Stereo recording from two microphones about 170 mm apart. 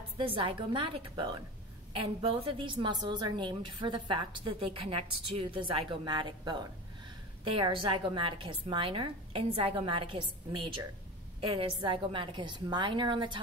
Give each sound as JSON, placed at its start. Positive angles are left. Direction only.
{"t": 0.2, "sound": "a woman's voice", "side_deg": -30}
{"t": 11.4, "sound": "a woman's voice", "side_deg": -30}